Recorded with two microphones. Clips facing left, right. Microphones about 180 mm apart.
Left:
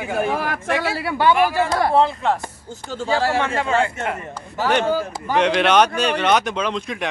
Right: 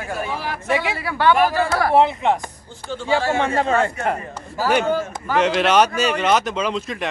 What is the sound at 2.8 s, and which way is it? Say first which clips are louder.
Speech: right 1 dB; 40° left (ahead or behind).